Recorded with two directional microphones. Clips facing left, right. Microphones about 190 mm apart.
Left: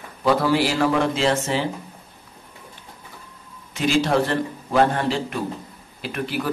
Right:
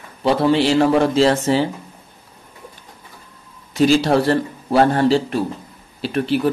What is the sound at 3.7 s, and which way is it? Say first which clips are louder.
A man's voice: right 5 dB; 35° right (ahead or behind).